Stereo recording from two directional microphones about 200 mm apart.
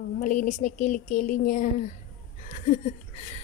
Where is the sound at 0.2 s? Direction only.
40° left (ahead or behind).